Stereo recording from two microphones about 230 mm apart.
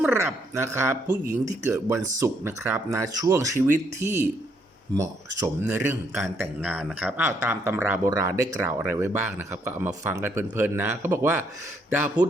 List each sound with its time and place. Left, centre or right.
0.0 s speech: centre
1.0 s speech: right
1.6 s speech: centre